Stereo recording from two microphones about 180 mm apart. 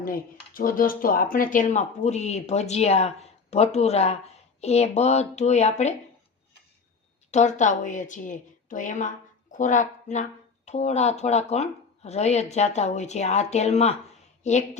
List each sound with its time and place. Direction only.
0.0 s speech: 50° left (ahead or behind)
7.3 s a woman's voice: 40° left (ahead or behind)